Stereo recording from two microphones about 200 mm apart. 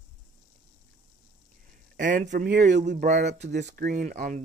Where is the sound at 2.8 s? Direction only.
40° right (ahead or behind).